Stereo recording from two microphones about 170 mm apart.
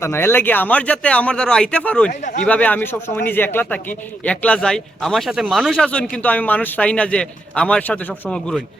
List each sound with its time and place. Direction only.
0.0 s speech: 15° left (ahead or behind)
2.0 s speech: 45° left (ahead or behind)
2.4 s speech: 10° left (ahead or behind)